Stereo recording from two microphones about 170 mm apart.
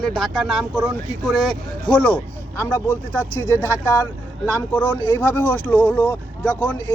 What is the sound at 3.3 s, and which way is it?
Speech, 15° left (ahead or behind).